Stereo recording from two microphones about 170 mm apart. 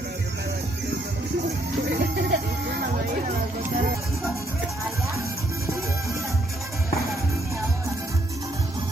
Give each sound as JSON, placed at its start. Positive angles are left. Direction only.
{"t": 1.9, "sound": "music", "side_deg": -75}